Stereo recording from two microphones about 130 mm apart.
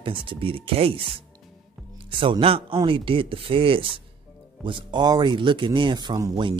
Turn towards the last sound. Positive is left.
turn(degrees=-30)  # may be behind; listen again after turning